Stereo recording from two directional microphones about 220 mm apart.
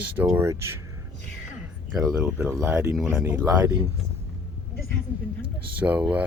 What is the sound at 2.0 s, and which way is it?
Speech, 5° right (ahead or behind).